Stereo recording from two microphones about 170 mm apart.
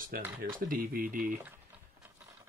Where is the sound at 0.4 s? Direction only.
55° right (ahead or behind).